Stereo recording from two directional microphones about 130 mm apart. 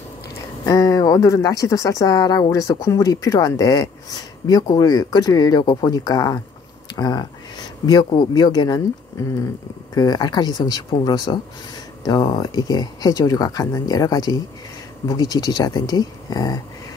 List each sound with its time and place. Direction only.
0.7 s speech: 25° left (ahead or behind)